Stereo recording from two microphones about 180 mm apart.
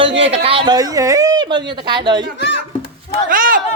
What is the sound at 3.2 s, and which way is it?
Speech, 50° right (ahead or behind).